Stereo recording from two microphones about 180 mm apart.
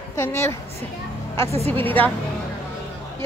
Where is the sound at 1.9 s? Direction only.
10° left (ahead or behind).